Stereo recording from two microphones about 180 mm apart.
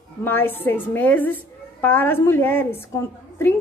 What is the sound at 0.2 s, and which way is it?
A woman's voice, 10° left (ahead or behind).